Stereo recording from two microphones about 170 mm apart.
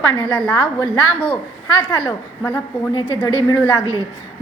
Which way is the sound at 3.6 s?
10° left (ahead or behind).